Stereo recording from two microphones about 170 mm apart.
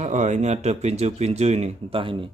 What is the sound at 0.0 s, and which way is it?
Speech, 45° right (ahead or behind).